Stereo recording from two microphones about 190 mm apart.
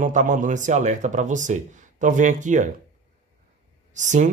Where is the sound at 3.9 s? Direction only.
40° right (ahead or behind).